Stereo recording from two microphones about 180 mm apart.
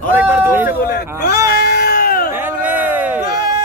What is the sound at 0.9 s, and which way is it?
Bleat, 65° left (ahead or behind).